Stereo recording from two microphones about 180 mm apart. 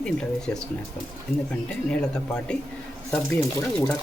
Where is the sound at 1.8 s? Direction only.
5° left (ahead or behind).